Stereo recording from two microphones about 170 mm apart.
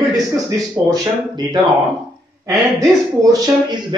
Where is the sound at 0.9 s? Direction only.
20° right (ahead or behind).